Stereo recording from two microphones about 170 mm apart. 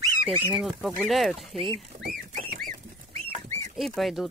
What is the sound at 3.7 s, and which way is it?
Speech, centre (ahead or behind).